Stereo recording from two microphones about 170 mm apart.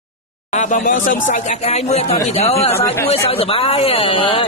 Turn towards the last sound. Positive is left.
turn(degrees=30)  # may be behind; listen again after turning